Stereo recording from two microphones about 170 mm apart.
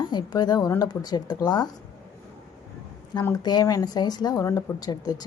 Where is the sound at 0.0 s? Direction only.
25° left (ahead or behind).